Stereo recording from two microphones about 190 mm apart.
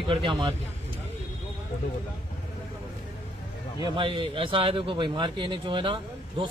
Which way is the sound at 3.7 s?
25° right (ahead or behind).